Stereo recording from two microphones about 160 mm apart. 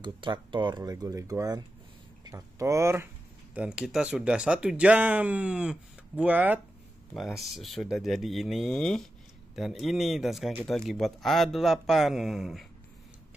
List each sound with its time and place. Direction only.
0.0 s speech: 30° right (ahead or behind)
3.5 s speech: 5° right (ahead or behind)